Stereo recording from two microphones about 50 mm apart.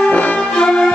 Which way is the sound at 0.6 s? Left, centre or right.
Centre.